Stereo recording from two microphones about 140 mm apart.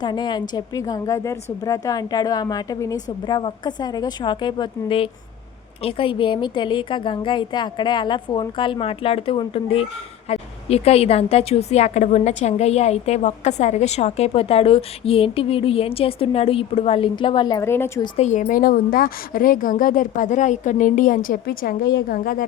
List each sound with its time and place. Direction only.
0.0 s a woman's voice: 30° left (ahead or behind)
17.6 s a woman's voice: 20° left (ahead or behind)
18.2 s a woman's voice: 60° left (ahead or behind); by 22.4 s 90° left